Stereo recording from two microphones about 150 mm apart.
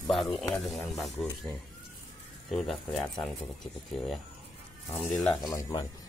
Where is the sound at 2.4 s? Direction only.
Centre (ahead or behind).